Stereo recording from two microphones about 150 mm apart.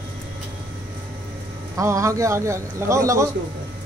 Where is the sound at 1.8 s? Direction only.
20° right (ahead or behind).